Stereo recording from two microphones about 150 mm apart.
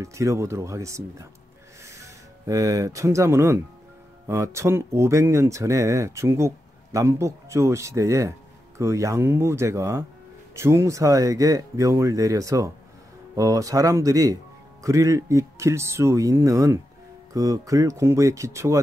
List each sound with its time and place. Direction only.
0.0 s speech: 20° right (ahead or behind)